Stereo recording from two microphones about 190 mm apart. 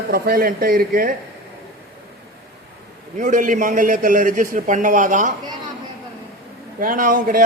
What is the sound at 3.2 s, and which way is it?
A man's voice, 45° right (ahead or behind).